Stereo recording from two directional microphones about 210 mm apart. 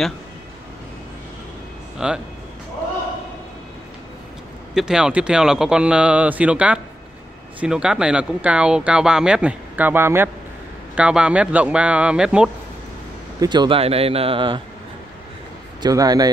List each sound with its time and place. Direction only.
2.0 s speech: 5° right (ahead or behind)
4.7 s speech: 5° right (ahead or behind)
13.4 s speech: 20° right (ahead or behind)
15.8 s speech: 20° right (ahead or behind)